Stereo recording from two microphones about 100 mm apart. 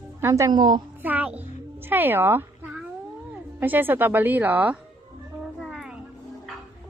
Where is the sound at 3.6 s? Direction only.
20° right (ahead or behind).